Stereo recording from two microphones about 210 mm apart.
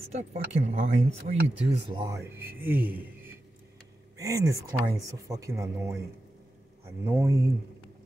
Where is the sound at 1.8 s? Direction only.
15° right (ahead or behind).